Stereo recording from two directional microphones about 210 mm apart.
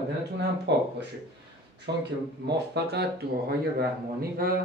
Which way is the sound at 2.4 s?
50° right (ahead or behind).